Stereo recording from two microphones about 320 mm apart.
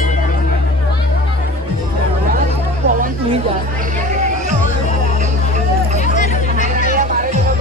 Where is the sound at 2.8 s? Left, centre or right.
Right.